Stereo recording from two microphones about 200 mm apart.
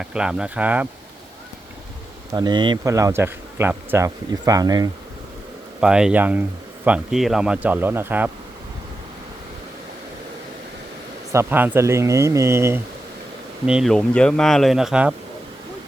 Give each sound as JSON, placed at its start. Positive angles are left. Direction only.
{"t": 0.0, "sound": "speech", "side_deg": -5}
{"t": 2.3, "sound": "speech", "side_deg": -20}
{"t": 5.8, "sound": "speech", "side_deg": -5}
{"t": 11.3, "sound": "speech", "side_deg": -10}
{"t": 13.7, "sound": "speech", "side_deg": 0}